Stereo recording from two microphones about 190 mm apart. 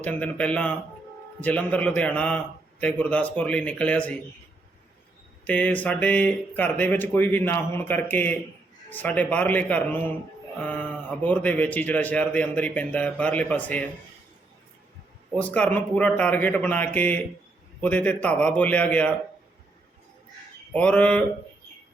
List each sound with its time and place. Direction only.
0.0 s a man's voice: 10° left (ahead or behind)
5.5 s a man's voice: 10° left (ahead or behind)
15.4 s a man's voice: 5° left (ahead or behind)
20.7 s a man's voice: 5° left (ahead or behind)